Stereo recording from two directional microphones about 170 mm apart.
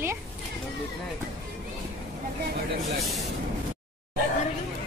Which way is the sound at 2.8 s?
Centre (ahead or behind).